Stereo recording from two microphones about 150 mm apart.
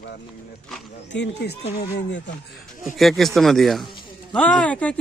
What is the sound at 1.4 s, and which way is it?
Speech, 90° left.